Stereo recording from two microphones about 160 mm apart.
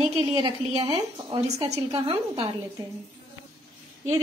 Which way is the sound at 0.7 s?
35° right (ahead or behind).